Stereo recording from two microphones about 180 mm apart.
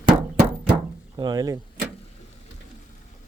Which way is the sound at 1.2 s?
20° right (ahead or behind).